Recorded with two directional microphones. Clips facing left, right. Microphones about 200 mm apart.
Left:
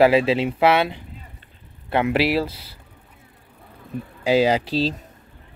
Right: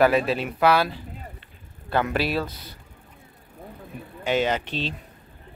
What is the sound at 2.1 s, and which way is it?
Speech, 25° left (ahead or behind).